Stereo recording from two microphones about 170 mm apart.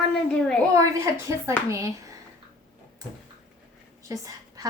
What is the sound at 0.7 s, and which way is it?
A woman's voice, 20° right (ahead or behind).